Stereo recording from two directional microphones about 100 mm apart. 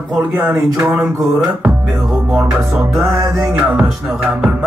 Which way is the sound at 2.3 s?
5° right (ahead or behind).